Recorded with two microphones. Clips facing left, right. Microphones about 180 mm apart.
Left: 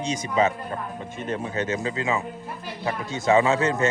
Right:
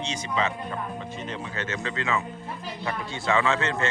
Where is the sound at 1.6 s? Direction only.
15° left (ahead or behind).